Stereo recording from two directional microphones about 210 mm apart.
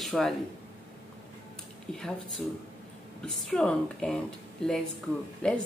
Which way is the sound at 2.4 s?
Centre (ahead or behind).